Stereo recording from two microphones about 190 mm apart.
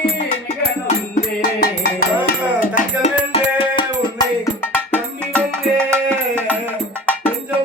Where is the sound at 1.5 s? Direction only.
55° left (ahead or behind).